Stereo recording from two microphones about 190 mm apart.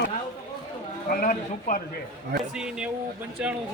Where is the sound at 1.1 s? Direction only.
45° left (ahead or behind).